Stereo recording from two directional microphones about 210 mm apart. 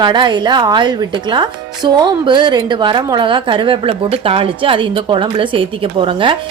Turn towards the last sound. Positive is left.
turn(degrees=-25)  # may be behind; listen again after turning